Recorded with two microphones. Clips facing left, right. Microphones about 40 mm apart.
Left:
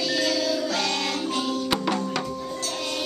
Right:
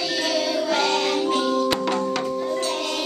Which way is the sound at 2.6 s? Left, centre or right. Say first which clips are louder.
Right 4 dB; right.